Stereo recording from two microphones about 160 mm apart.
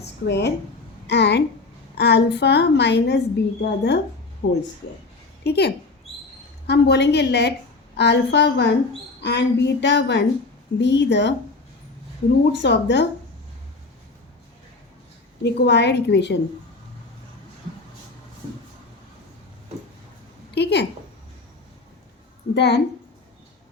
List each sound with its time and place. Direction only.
0.0 s a sound: 90° left
1.0 s a woman's voice: 90° left
12.5 s a woman's voice: 90° left
15.4 s a woman's voice: 90° left
20.6 s a sound: 90° left
22.5 s a woman's voice: 90° left